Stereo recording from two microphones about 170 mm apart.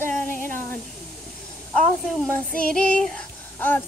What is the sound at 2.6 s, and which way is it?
Female singing, 5° left (ahead or behind).